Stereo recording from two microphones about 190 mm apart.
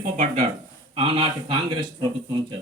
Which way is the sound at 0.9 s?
30° right (ahead or behind).